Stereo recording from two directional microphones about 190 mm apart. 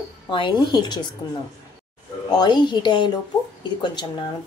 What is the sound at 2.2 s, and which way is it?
Speech, 20° left (ahead or behind).